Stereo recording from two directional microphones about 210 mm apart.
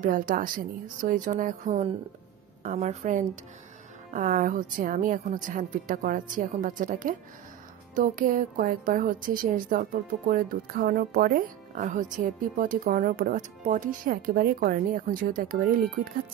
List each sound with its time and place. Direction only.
0.0 s a woman's voice: 40° right (ahead or behind)